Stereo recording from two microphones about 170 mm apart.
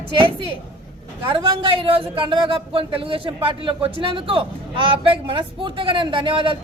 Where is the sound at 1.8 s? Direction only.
30° right (ahead or behind).